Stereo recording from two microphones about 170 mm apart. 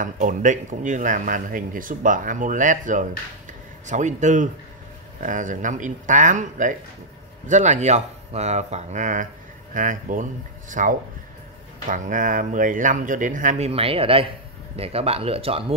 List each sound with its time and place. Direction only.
0.0 s speech: 50° right (ahead or behind)